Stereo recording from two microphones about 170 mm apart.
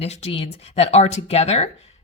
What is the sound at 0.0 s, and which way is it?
Speech, 40° left (ahead or behind).